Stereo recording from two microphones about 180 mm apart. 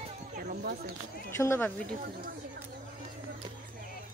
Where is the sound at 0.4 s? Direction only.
50° right (ahead or behind).